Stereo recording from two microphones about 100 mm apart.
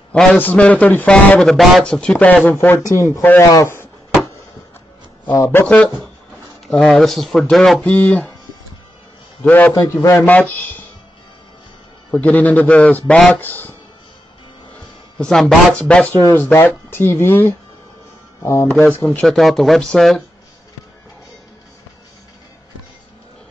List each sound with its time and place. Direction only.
0.1 s a man's voice: 5° left (ahead or behind)
1.5 s speech: centre (ahead or behind); by 3.4 s 20° left (ahead or behind)
3.4 s a sound: 30° left (ahead or behind)
5.4 s speech: 25° left (ahead or behind)
6.7 s speech: 5° left (ahead or behind)
7.8 s speech: 15° left (ahead or behind)
9.4 s speech: 15° left (ahead or behind)
12.1 s speech: 15° left (ahead or behind)
15.1 s speech: 5° left (ahead or behind); by 18.7 s 25° left (ahead or behind)
19.2 s speech: centre (ahead or behind)